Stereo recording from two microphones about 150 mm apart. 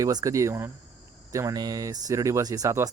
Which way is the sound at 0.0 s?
25° right (ahead or behind).